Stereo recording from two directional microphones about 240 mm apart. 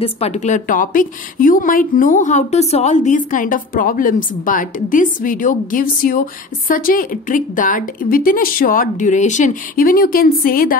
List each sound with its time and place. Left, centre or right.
0.0 s a woman's voice: left